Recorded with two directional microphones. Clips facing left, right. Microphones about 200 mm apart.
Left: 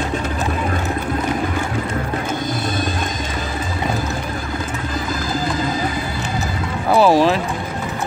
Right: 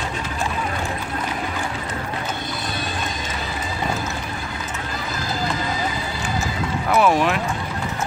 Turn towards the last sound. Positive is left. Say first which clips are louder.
# left 4 dB
turn(degrees=35)  # may be behind; listen again after turning